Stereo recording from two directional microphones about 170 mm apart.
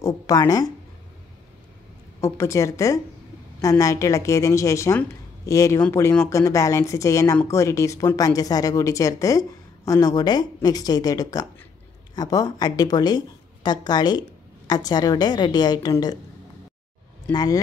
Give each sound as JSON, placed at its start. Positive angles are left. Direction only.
{"t": 0.0, "sound": "speech", "side_deg": 20}
{"t": 2.1, "sound": "a woman's voice", "side_deg": 15}
{"t": 17.3, "sound": "speech", "side_deg": 25}